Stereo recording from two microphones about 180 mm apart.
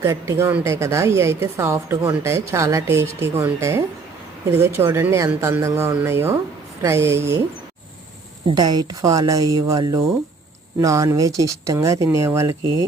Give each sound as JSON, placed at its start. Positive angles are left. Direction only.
{"t": 0.0, "sound": "a woman's voice", "side_deg": -15}
{"t": 8.4, "sound": "a woman's voice", "side_deg": -25}